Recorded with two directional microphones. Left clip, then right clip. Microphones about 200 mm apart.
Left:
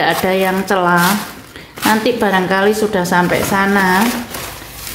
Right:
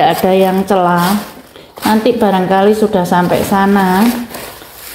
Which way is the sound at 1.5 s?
10° right (ahead or behind).